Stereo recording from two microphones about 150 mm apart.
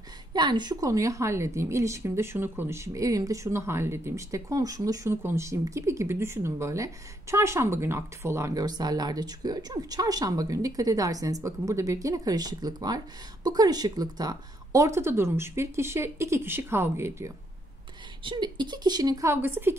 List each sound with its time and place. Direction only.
0.3 s a woman's voice: 30° right (ahead or behind)
18.2 s a woman's voice: 30° right (ahead or behind); by 19.8 s 15° right (ahead or behind)